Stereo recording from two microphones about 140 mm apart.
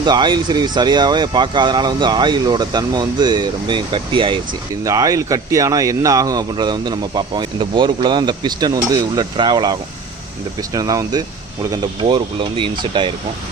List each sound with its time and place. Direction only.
0.0 s speech: 30° right (ahead or behind)
4.8 s speech: 25° right (ahead or behind)